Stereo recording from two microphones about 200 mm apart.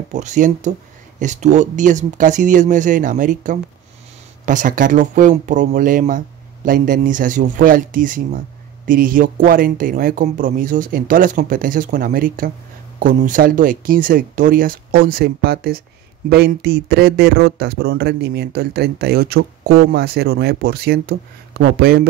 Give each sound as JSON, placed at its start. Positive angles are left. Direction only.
{"t": 0.1, "sound": "speech", "side_deg": -40}